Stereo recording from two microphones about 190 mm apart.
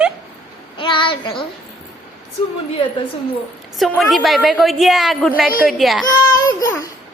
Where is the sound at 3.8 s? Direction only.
Centre (ahead or behind).